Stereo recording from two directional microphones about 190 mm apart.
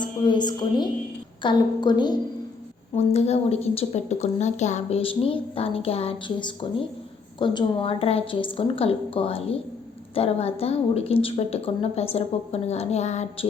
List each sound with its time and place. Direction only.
0.0 s a woman's voice: 25° left (ahead or behind)
2.9 s a woman's voice: 35° left (ahead or behind)